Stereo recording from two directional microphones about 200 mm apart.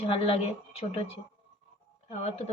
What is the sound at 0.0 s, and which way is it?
A woman's voice, 30° left (ahead or behind).